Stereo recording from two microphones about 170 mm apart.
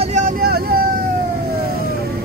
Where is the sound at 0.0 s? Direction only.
50° right (ahead or behind); by 2.2 s 65° right (ahead or behind).